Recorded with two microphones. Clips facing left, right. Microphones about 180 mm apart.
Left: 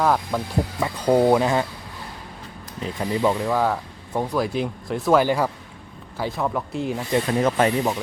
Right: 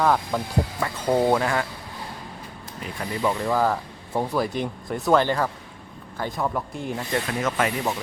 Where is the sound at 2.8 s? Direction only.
20° left (ahead or behind).